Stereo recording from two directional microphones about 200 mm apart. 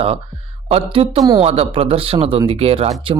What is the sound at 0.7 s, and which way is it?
Mantra, 30° right (ahead or behind).